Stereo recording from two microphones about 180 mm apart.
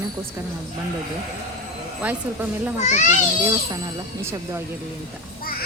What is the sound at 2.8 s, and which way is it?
Speech, 40° left (ahead or behind).